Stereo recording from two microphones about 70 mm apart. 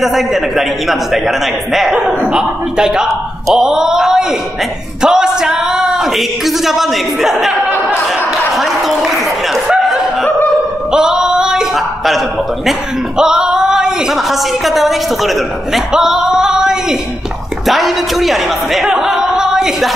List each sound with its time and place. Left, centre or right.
0.0 s a man's voice: centre
8.5 s a sound: centre
13.2 s speech: centre